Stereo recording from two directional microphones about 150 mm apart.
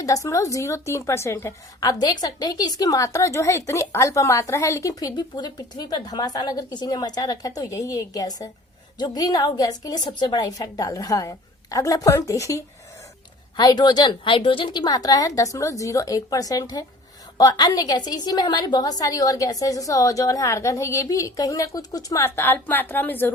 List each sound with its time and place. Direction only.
0.0 s a woman's voice: 20° left (ahead or behind)